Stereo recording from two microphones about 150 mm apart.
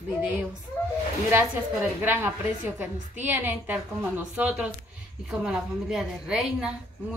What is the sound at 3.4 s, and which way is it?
A woman's voice, 10° right (ahead or behind).